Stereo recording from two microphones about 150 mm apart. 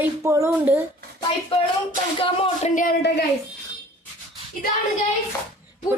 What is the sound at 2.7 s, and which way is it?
Speech, 75° left (ahead or behind).